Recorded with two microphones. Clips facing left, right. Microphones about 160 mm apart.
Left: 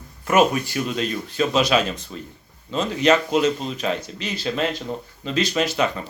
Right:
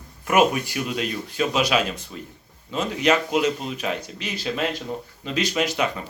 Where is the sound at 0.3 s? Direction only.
15° right (ahead or behind).